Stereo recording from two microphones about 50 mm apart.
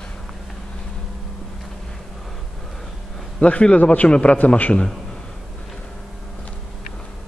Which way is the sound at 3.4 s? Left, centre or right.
Left.